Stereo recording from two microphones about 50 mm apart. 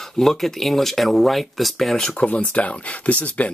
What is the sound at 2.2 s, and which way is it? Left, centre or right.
Speech, left.